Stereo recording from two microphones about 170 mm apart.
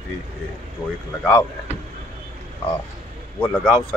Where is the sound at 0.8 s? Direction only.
20° left (ahead or behind).